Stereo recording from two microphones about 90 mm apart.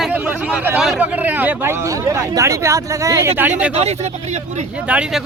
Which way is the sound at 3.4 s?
20° right (ahead or behind).